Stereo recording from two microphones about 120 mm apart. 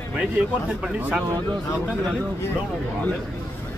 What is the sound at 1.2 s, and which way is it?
Speech, 35° right (ahead or behind).